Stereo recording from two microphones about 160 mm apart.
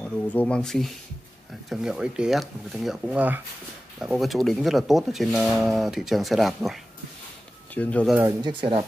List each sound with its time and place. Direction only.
0.0 s speech: 10° left (ahead or behind)
8.4 s speech: 30° right (ahead or behind)